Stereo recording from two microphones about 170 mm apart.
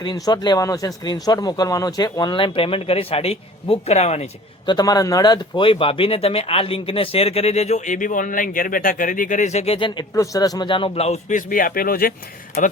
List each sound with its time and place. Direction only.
0.0 s speech: 25° left (ahead or behind); by 4.3 s 40° left (ahead or behind)
4.6 s speech: 25° left (ahead or behind); by 12.1 s 60° left (ahead or behind)